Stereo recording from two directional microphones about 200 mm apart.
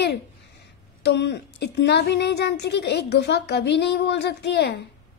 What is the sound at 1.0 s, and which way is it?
A woman's voice, 60° left (ahead or behind).